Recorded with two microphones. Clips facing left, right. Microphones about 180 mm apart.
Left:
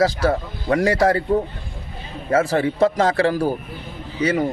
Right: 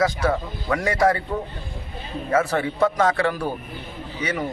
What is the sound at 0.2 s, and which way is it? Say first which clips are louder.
A man's voice: left 3 dB; 30° left (ahead or behind).